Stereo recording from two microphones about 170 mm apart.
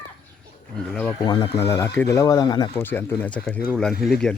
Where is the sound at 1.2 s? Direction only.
25° left (ahead or behind).